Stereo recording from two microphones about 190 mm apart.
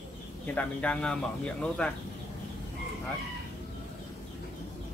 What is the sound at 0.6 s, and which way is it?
Speech, 5° left (ahead or behind).